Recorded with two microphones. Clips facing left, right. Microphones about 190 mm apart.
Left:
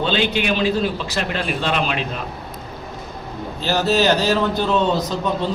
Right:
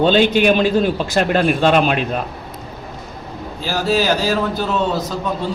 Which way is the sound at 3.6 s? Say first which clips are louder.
Even; 10° right (ahead or behind).